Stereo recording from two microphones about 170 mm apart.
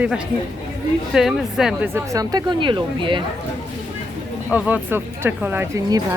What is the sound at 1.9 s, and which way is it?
Speech, 20° right (ahead or behind).